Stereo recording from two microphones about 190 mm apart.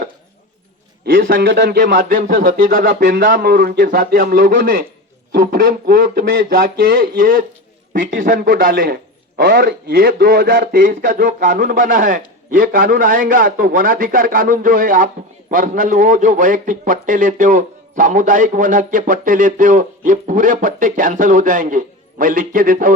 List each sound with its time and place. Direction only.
1.0 s a man's voice: 50° right (ahead or behind)
1.4 s a man's voice: 65° right (ahead or behind); by 23.0 s 45° right (ahead or behind)